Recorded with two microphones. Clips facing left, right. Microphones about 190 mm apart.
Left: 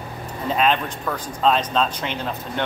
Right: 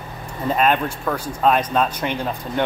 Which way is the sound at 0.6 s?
5° right (ahead or behind).